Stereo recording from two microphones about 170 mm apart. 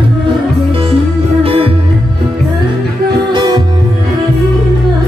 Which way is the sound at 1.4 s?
35° right (ahead or behind).